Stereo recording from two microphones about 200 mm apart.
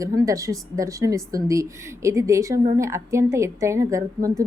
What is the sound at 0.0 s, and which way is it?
A woman's voice, 15° right (ahead or behind).